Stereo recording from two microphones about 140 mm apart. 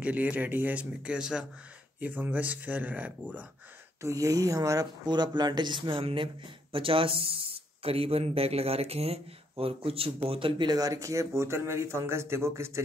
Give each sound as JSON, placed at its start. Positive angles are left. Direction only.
{"t": 0.0, "sound": "speech", "side_deg": -10}
{"t": 4.0, "sound": "speech", "side_deg": -20}